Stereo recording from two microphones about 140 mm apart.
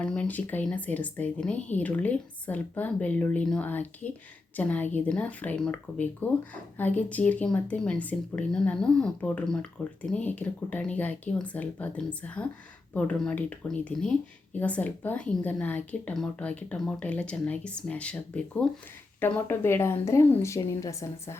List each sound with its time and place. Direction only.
0.0 s speech: 10° left (ahead or behind)
19.2 s speech: 15° left (ahead or behind)